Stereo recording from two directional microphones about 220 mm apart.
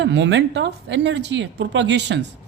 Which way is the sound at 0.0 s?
55° right (ahead or behind).